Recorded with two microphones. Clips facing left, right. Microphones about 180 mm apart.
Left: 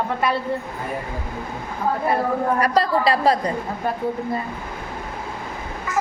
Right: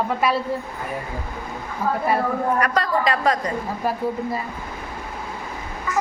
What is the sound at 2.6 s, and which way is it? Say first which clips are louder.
Speech: left 2 dB; 35° left (ahead or behind).